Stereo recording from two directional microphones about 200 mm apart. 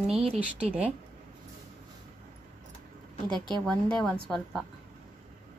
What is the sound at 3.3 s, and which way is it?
Speech, 20° right (ahead or behind).